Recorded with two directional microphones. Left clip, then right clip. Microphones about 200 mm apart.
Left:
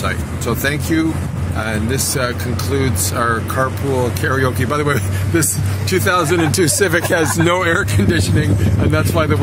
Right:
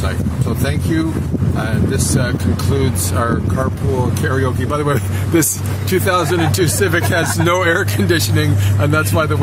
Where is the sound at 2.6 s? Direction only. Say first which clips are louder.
Left 3 dB; centre (ahead or behind).